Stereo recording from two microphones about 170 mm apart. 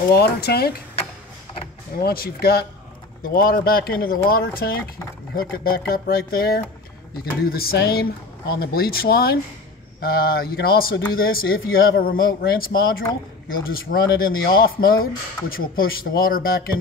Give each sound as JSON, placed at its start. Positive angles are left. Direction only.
{"t": 0.1, "sound": "speech", "side_deg": 70}
{"t": 2.0, "sound": "speech", "side_deg": 65}